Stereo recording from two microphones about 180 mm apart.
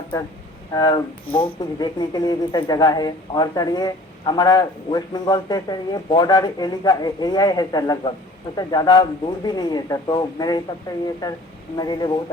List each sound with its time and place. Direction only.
0.7 s speech: 20° left (ahead or behind)